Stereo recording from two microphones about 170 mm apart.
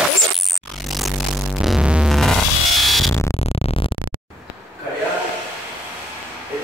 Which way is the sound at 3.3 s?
35° left (ahead or behind).